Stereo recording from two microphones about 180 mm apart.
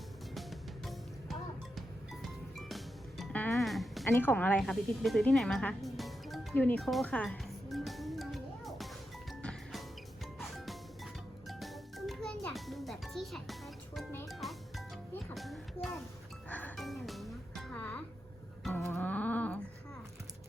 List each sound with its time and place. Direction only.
2.2 s music: centre (ahead or behind)
4.1 s music: 10° left (ahead or behind)
11.4 s music: centre (ahead or behind)